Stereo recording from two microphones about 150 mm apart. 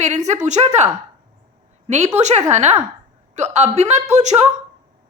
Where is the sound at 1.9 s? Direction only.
50° right (ahead or behind).